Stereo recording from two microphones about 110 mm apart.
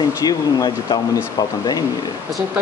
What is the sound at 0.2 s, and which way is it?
Speech, 35° left (ahead or behind).